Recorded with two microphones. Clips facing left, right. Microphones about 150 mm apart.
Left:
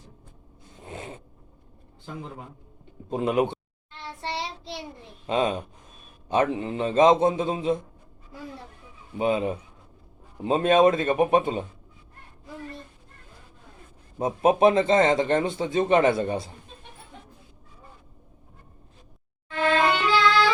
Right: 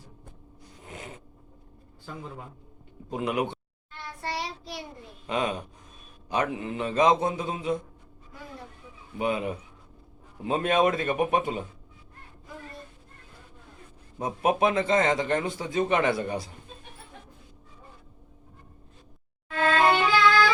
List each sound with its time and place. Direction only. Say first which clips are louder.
0.9 s zipper: left 4 dB; 30° left (ahead or behind)
3.1 s a man's voice: left 5 dB; 25° left (ahead or behind)
4.0 s child singing: left 1 dB; 25° left (ahead or behind)
5.2 s a man's voice: left 4 dB; 25° left (ahead or behind)
9.1 s a man's voice: left 4 dB; 25° left (ahead or behind)
14.2 s a man's voice: left 5 dB; 25° left (ahead or behind)
19.5 s music: even; 20° left (ahead or behind)